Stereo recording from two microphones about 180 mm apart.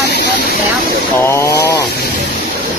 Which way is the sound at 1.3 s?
15° left (ahead or behind).